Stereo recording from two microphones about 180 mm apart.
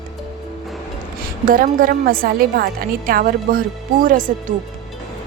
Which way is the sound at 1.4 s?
50° right (ahead or behind).